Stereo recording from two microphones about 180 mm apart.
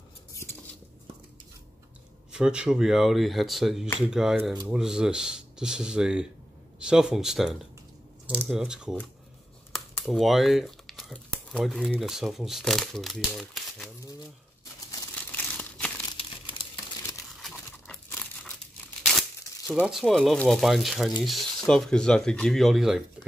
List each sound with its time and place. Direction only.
2.3 s speech: 5° right (ahead or behind)
9.9 s speech: centre (ahead or behind)
14.6 s crumpling: 20° left (ahead or behind)
15.1 s crumpling: 5° left (ahead or behind)
16.1 s crumpling: 25° left (ahead or behind)
17.4 s crumpling: 5° left (ahead or behind)
19.7 s speech: centre (ahead or behind)